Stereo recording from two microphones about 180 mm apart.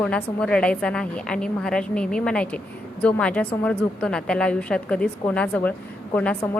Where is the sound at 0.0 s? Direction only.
5° left (ahead or behind).